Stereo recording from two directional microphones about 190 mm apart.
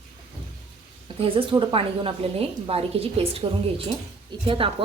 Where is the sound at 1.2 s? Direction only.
30° right (ahead or behind).